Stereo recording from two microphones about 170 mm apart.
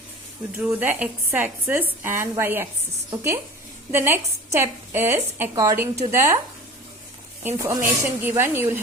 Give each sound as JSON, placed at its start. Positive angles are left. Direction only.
{"t": 0.5, "sound": "a woman's voice", "side_deg": -10}
{"t": 7.4, "sound": "a woman's voice", "side_deg": -20}